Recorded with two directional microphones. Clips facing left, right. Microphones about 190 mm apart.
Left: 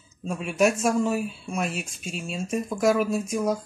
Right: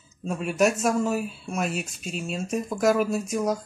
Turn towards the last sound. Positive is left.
turn(degrees=0)  # may be behind; listen again after turning